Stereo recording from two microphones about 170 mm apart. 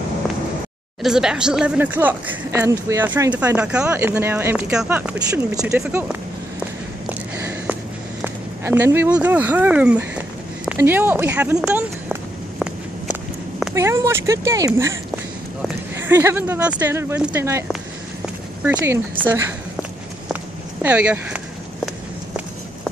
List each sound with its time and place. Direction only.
1.0 s speech: 5° right (ahead or behind)
7.1 s a sound: 10° right (ahead or behind)
8.2 s speech: 15° right (ahead or behind)
13.7 s speech: 15° right (ahead or behind)
16.1 s speech: 15° right (ahead or behind)